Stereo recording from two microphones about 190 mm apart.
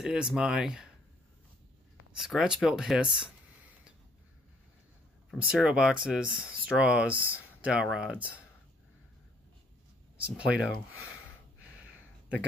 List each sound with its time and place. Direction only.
0.0 s speech: 5° right (ahead or behind)
2.2 s speech: 5° right (ahead or behind)
5.3 s speech: 5° right (ahead or behind)
10.1 s speech: 5° right (ahead or behind)